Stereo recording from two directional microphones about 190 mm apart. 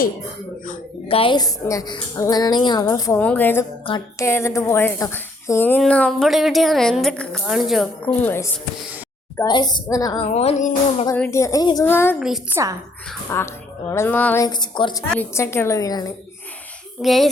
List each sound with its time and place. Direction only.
1.0 s a woman's voice: 30° left (ahead or behind); by 8.4 s 10° left (ahead or behind)
9.4 s a woman's voice: 20° left (ahead or behind)
10.3 s music: 40° left (ahead or behind)
11.2 s a woman's voice: 15° left (ahead or behind)
12.2 s a woman's voice: 5° right (ahead or behind)
13.3 s a woman's voice: 15° left (ahead or behind)
14.4 s a woman's voice: 20° left (ahead or behind)
15.1 s a woman's voice: 10° left (ahead or behind)
17.0 s a woman's voice: centre (ahead or behind)